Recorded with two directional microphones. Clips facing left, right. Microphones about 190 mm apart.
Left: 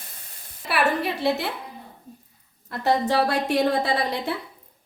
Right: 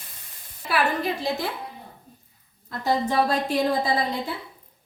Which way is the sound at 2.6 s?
70° left (ahead or behind).